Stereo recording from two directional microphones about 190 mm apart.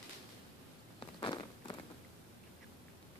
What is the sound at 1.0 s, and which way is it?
Walk, 25° left (ahead or behind).